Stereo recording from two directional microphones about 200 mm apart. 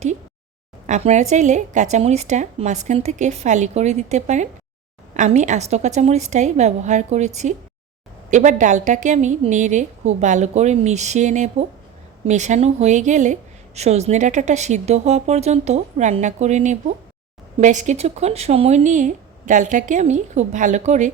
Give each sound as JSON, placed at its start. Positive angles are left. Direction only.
{"t": 0.9, "sound": "a woman's voice", "side_deg": -35}